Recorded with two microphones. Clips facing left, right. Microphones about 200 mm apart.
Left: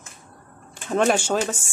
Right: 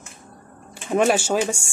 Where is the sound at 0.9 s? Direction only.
10° right (ahead or behind).